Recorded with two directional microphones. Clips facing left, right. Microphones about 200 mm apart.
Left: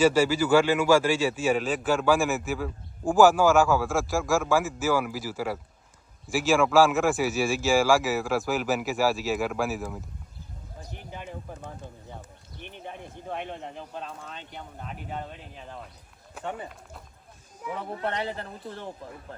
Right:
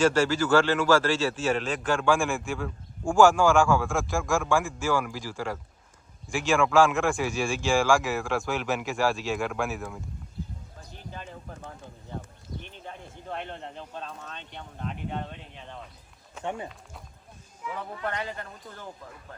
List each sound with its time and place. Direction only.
0.0 s a man's voice: 10° left (ahead or behind)
10.8 s a sound: 15° left (ahead or behind)
12.7 s speech: 15° left (ahead or behind)
16.4 s speech: 20° right (ahead or behind)
17.9 s speech: 25° left (ahead or behind)